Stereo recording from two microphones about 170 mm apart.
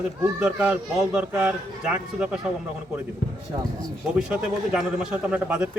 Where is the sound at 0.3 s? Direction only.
5° right (ahead or behind).